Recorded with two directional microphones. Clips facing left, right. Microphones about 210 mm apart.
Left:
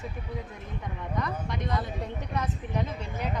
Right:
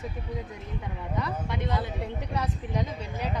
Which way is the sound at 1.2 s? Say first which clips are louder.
Right 1 dB; 5° right (ahead or behind).